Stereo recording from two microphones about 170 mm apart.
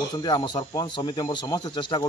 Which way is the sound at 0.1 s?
25° left (ahead or behind).